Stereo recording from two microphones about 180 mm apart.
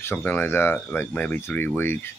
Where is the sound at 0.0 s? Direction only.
10° left (ahead or behind).